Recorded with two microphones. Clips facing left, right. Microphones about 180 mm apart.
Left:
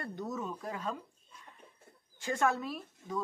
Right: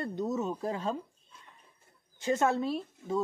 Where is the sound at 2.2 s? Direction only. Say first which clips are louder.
Right 4 dB; 25° right (ahead or behind).